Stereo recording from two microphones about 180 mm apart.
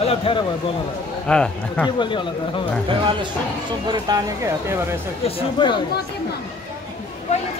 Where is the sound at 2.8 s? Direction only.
25° right (ahead or behind).